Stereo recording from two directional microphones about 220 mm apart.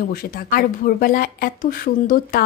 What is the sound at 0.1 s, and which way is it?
A woman's voice, 45° left (ahead or behind).